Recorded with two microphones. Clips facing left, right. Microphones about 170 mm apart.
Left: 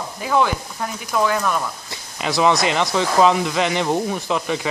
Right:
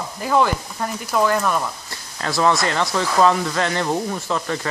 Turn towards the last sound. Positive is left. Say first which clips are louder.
# left 2 dB
turn(degrees=10)  # may be behind; listen again after turning